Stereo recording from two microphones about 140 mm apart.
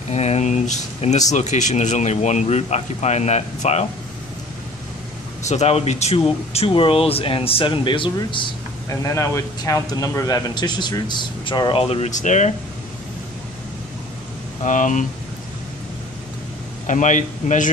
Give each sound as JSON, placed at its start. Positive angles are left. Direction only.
{"t": 0.1, "sound": "a sound", "side_deg": 50}
{"t": 1.3, "sound": "speech", "side_deg": 55}
{"t": 5.5, "sound": "speech", "side_deg": 50}
{"t": 9.0, "sound": "a man's voice", "side_deg": 20}
{"t": 14.6, "sound": "speech", "side_deg": 65}
{"t": 16.8, "sound": "speech", "side_deg": 60}